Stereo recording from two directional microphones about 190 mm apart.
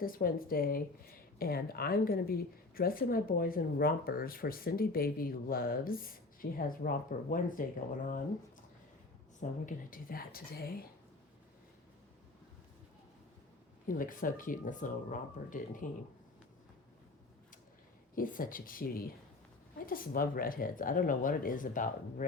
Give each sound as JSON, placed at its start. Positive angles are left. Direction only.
{"t": 0.0, "sound": "a woman's voice", "side_deg": 50}
{"t": 9.4, "sound": "a woman's voice", "side_deg": 45}
{"t": 13.8, "sound": "a woman's voice", "side_deg": 45}
{"t": 18.1, "sound": "a woman's voice", "side_deg": 45}